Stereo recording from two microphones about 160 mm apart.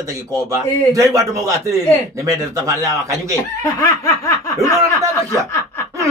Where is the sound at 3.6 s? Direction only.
20° left (ahead or behind).